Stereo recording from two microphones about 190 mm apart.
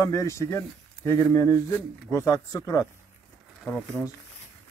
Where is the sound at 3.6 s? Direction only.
5° left (ahead or behind).